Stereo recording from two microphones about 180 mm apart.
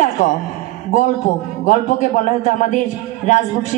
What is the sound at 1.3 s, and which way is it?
A woman's voice, 45° left (ahead or behind).